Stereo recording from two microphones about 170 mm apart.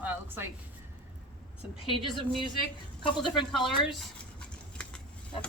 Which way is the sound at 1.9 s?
30° left (ahead or behind).